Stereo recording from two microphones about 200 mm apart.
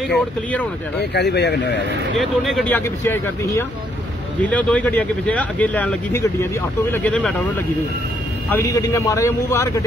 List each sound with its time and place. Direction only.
0.1 s speech: 5° left (ahead or behind)
1.1 s speech: 55° left (ahead or behind)
2.1 s speech: centre (ahead or behind)
8.5 s speech: 15° left (ahead or behind)